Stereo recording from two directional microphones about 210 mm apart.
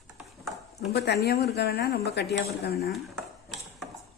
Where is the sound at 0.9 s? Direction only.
50° left (ahead or behind).